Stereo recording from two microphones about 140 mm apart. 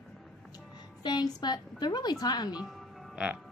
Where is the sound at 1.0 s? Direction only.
30° left (ahead or behind).